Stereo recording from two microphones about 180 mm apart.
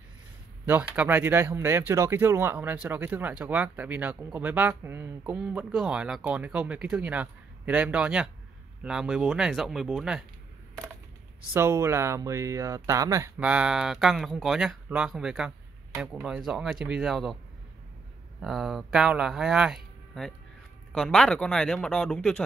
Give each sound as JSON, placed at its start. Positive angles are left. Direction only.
{"t": 0.7, "sound": "speech", "side_deg": -10}
{"t": 11.5, "sound": "speech", "side_deg": -15}
{"t": 13.4, "sound": "speech", "side_deg": -5}
{"t": 18.4, "sound": "speech", "side_deg": 0}